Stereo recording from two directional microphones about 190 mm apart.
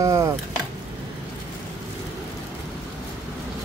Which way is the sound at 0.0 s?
15° right (ahead or behind).